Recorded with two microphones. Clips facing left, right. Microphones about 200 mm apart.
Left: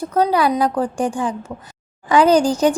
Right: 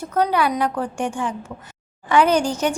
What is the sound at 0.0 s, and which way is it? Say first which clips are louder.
A woman's voice: left 3 dB; 35° left (ahead or behind).